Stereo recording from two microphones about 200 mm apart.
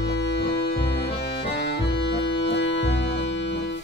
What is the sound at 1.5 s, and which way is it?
Accordion, 60° left (ahead or behind).